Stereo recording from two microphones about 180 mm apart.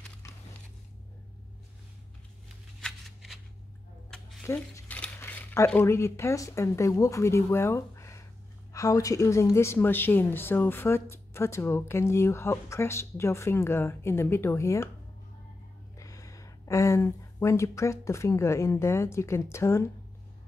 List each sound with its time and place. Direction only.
2.8 s shuffling cards: centre (ahead or behind)
4.5 s mechanisms: 10° left (ahead or behind)
5.7 s speech: 15° left (ahead or behind)
16.0 s speech: 20° left (ahead or behind)